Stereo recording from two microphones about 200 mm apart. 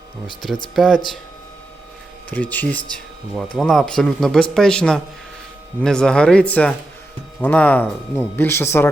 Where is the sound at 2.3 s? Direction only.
10° left (ahead or behind).